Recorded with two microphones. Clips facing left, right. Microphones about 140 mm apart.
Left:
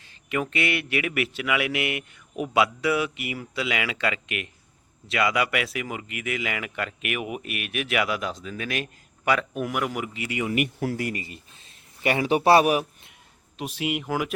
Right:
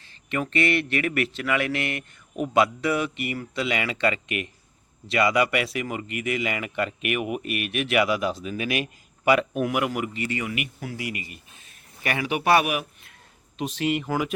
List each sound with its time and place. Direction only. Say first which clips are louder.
0.0 s a man's voice: left 1 dB; 5° left (ahead or behind)
10.5 s speech: left 7 dB; 50° left (ahead or behind)
11.2 s speech: left 1 dB; 30° left (ahead or behind)
13.6 s speech: right 3 dB; 10° left (ahead or behind)